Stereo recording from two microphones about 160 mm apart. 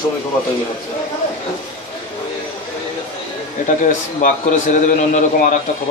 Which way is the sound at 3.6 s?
50° left (ahead or behind).